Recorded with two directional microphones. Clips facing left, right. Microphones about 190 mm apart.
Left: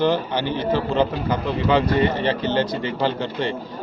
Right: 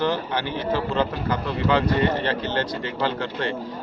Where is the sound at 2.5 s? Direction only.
20° left (ahead or behind).